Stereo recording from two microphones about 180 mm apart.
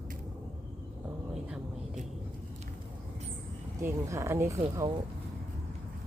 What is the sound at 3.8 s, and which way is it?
Speech, 15° right (ahead or behind).